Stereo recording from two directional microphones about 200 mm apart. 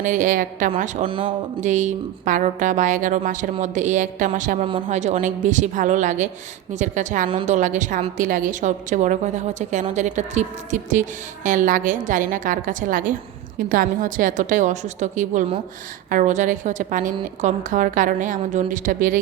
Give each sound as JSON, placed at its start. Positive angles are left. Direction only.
{"t": 0.0, "sound": "a woman's voice", "side_deg": -40}
{"t": 1.0, "sound": "speech", "side_deg": -25}
{"t": 1.6, "sound": "a woman's voice", "side_deg": -40}